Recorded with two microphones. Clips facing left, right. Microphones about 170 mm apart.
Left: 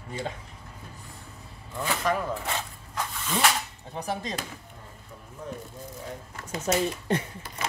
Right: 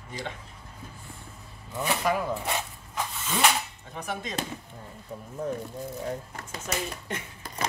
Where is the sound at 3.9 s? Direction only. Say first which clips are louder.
Left 3 dB; 35° left (ahead or behind).